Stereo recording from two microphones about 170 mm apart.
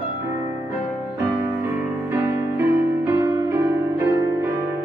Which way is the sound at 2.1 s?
15° right (ahead or behind).